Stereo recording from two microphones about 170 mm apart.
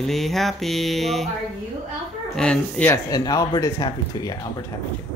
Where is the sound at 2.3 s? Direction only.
5° left (ahead or behind).